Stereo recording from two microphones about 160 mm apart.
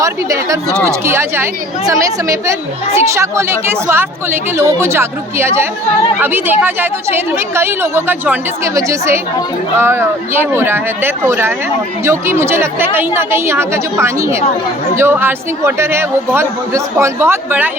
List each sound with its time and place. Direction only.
0.0 s a woman's voice: 20° right (ahead or behind)